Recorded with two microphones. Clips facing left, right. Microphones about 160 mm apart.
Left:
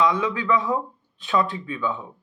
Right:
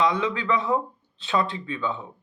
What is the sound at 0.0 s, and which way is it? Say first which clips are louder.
Speech: left 1 dB; 30° right (ahead or behind).